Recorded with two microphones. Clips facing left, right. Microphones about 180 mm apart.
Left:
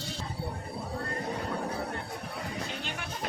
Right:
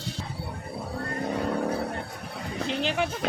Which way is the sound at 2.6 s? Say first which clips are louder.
Right 11 dB; 90° right.